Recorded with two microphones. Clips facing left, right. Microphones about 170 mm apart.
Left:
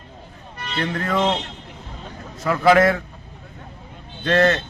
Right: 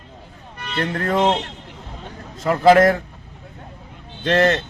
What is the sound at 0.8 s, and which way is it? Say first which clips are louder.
Speech: right 2 dB; 45° right (ahead or behind).